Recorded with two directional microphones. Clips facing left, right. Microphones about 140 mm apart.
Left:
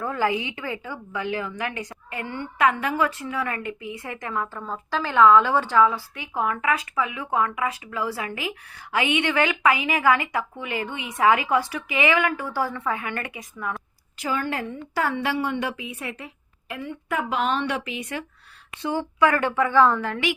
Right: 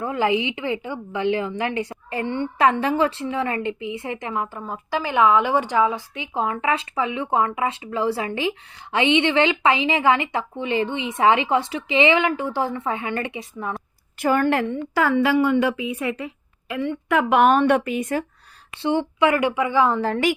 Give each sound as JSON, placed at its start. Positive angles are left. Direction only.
{"t": 0.0, "sound": "a woman's voice", "side_deg": -20}
{"t": 14.2, "sound": "a woman's voice", "side_deg": -55}
{"t": 16.7, "sound": "a woman's voice", "side_deg": -90}
{"t": 18.8, "sound": "speech", "side_deg": -25}
{"t": 20.0, "sound": "a woman's voice", "side_deg": -40}